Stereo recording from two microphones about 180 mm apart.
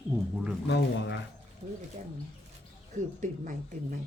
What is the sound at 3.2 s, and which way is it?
Speech, 45° right (ahead or behind).